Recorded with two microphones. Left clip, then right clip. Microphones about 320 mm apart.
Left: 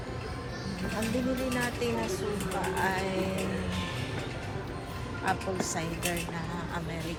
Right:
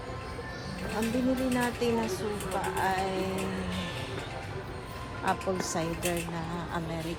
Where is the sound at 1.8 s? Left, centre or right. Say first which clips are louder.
Right 2 dB; centre.